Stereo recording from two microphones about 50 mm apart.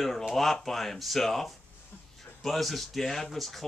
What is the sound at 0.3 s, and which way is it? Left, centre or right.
Speech, centre.